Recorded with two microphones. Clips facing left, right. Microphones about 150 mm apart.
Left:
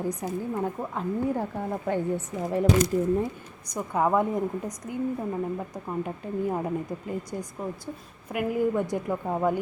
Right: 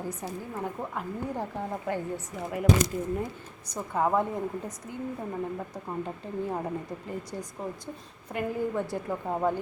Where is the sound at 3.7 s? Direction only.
15° left (ahead or behind).